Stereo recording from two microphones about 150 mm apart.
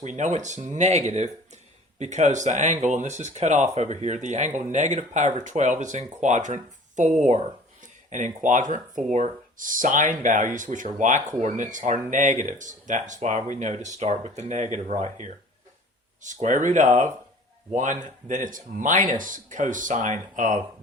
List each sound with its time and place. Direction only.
0.0 s speech: 55° right (ahead or behind)
18.3 s speech: 60° right (ahead or behind)